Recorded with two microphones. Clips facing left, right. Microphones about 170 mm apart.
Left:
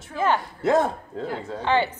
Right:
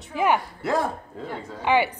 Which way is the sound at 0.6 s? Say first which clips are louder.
Left 6 dB; 20° left (ahead or behind).